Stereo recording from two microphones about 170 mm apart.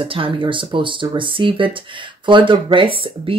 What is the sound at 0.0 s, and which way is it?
Speech, 30° right (ahead or behind).